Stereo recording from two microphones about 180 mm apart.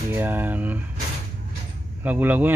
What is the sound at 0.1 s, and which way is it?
Speech, 10° right (ahead or behind).